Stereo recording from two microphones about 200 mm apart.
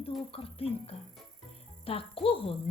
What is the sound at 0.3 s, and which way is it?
A woman's voice, 30° left (ahead or behind).